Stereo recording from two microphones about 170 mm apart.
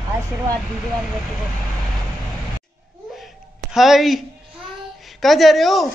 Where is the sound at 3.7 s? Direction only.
Centre (ahead or behind).